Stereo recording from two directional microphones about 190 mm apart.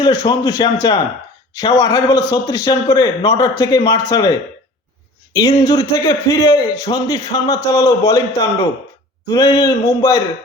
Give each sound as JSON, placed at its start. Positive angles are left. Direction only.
{"t": 0.0, "sound": "a man's voice", "side_deg": 20}